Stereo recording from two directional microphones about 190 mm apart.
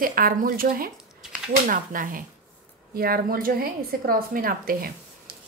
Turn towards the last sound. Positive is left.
turn(degrees=-50)  # may be behind; listen again after turning